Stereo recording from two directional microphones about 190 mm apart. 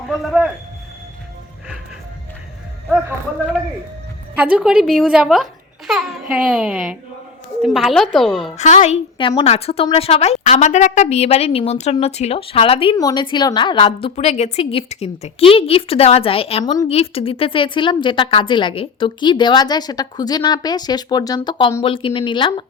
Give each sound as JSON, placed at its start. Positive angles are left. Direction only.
{"t": 0.1, "sound": "a woman's voice", "side_deg": 0}
{"t": 4.4, "sound": "a woman's voice", "side_deg": -5}
{"t": 8.5, "sound": "a woman's voice", "side_deg": 40}
{"t": 9.1, "sound": "a woman's voice", "side_deg": 30}